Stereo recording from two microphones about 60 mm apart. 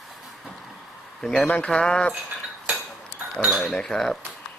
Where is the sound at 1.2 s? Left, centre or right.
Centre.